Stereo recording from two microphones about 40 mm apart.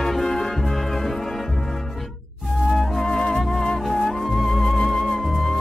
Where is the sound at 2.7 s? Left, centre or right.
Centre.